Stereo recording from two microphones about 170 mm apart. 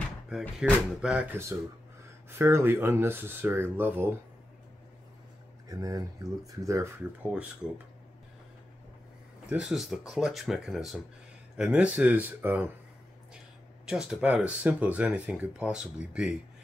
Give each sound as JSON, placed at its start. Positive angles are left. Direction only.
{"t": 0.3, "sound": "speech", "side_deg": 0}
{"t": 5.7, "sound": "speech", "side_deg": -20}
{"t": 9.5, "sound": "speech", "side_deg": -5}
{"t": 13.8, "sound": "speech", "side_deg": -5}